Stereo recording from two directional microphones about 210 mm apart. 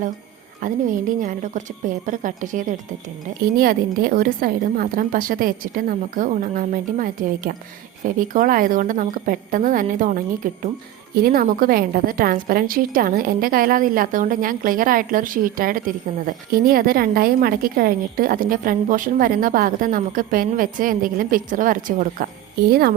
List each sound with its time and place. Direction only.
0.6 s a woman's voice: 40° right (ahead or behind)